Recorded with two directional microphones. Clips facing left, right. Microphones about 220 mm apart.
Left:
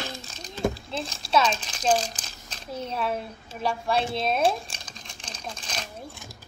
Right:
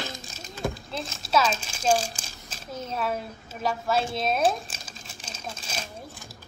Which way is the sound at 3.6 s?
Centre (ahead or behind).